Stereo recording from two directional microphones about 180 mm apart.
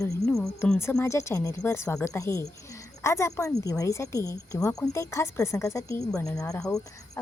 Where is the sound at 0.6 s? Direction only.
15° left (ahead or behind).